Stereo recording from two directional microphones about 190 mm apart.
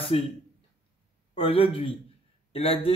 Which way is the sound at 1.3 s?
30° left (ahead or behind).